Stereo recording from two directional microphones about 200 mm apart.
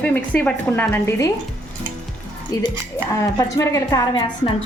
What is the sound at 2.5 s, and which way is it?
A woman's voice, 20° left (ahead or behind).